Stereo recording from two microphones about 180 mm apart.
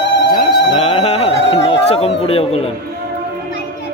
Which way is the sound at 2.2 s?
35° left (ahead or behind).